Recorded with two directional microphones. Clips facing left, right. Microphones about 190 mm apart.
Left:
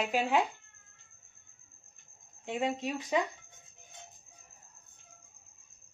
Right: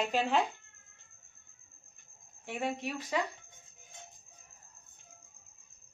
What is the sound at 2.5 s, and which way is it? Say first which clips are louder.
Speech: left 3 dB; 15° left (ahead or behind).